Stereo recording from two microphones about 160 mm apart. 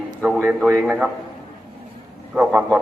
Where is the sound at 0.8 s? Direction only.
5° right (ahead or behind).